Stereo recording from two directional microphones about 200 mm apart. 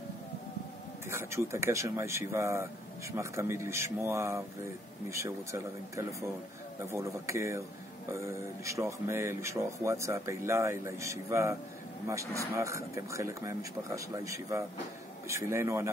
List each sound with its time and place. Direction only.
1.1 s speech: 15° right (ahead or behind)